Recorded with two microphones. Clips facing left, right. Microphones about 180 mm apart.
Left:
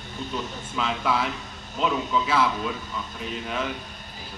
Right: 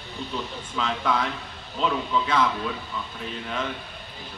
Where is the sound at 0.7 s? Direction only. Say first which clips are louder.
Even; 5° left (ahead or behind).